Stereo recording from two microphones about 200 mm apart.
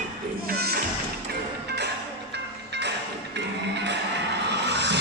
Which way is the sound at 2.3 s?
55° right (ahead or behind).